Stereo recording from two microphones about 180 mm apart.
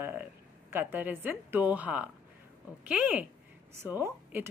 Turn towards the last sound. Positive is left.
turn(degrees=-10)  # may be behind; listen again after turning